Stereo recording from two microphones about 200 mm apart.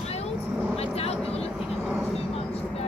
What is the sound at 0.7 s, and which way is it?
Vehicle, 30° left (ahead or behind).